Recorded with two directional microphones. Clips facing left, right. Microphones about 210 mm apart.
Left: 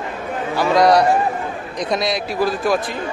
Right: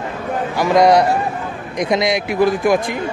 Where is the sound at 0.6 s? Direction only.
20° right (ahead or behind).